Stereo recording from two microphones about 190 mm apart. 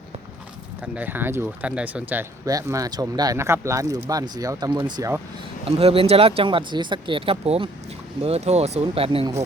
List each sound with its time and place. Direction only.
0.8 s speech: 10° right (ahead or behind); by 9.4 s 30° right (ahead or behind)